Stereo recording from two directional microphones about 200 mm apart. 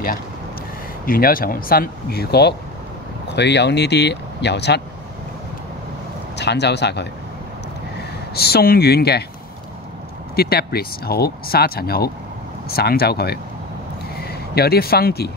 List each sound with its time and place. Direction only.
1.0 s speech: 45° left (ahead or behind)
6.3 s speech: 60° left (ahead or behind)
8.4 s speech: 50° left (ahead or behind)
10.3 s speech: 50° left (ahead or behind)